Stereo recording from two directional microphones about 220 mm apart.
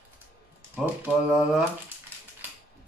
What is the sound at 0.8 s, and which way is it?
Speech, 10° right (ahead or behind).